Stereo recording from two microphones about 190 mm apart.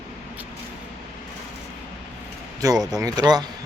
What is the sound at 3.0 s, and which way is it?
Speech, 20° right (ahead or behind).